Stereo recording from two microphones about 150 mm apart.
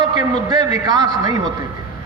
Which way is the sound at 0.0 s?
25° right (ahead or behind).